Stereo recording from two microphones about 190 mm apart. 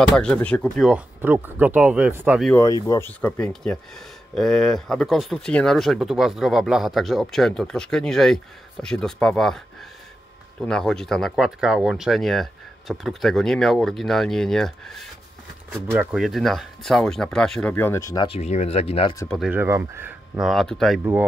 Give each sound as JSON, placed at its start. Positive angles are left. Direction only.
{"t": 0.2, "sound": "speech", "side_deg": 5}
{"t": 2.5, "sound": "speech", "side_deg": 15}
{"t": 10.6, "sound": "speech", "side_deg": 5}
{"t": 18.4, "sound": "speech", "side_deg": 35}
{"t": 19.2, "sound": "speech", "side_deg": 0}
{"t": 19.5, "sound": "speech", "side_deg": -10}
{"t": 21.0, "sound": "speech", "side_deg": -10}